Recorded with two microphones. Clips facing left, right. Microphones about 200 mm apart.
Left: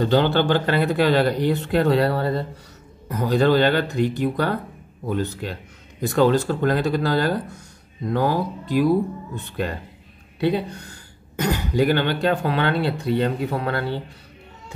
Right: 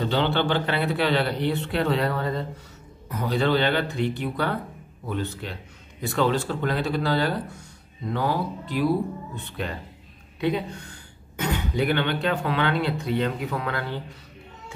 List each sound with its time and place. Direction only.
0.0 s speech: 40° left (ahead or behind)
11.3 s speech: 40° left (ahead or behind)